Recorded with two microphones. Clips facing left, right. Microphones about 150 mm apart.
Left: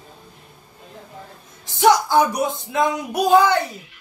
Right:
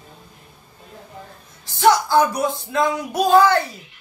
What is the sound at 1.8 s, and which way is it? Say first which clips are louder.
Speech: even; 15° left (ahead or behind).